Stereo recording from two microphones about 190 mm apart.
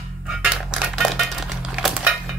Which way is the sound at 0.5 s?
5° right (ahead or behind).